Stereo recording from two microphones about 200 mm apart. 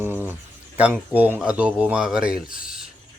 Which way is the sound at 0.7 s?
5° right (ahead or behind).